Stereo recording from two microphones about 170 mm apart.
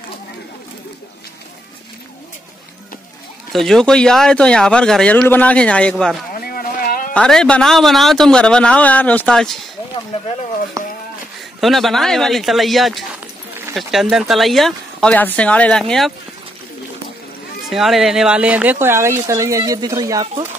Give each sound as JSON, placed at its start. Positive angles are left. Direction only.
{"t": 3.5, "sound": "speech", "side_deg": 0}
{"t": 6.3, "sound": "a sound", "side_deg": 60}
{"t": 7.2, "sound": "speech", "side_deg": 5}
{"t": 10.8, "sound": "a sound", "side_deg": -20}
{"t": 11.6, "sound": "speech", "side_deg": 0}
{"t": 17.6, "sound": "speech", "side_deg": 0}